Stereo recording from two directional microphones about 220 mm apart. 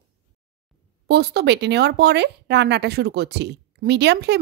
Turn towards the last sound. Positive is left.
turn(degrees=-50)  # may be behind; listen again after turning